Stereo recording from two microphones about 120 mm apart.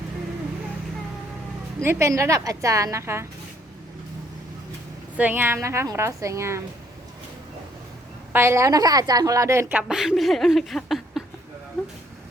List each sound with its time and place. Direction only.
1.8 s a woman's voice: 20° right (ahead or behind)
5.1 s a woman's voice: 15° right (ahead or behind)
8.3 s a woman's voice: 20° right (ahead or behind)
9.7 s a woman's voice: 5° right (ahead or behind)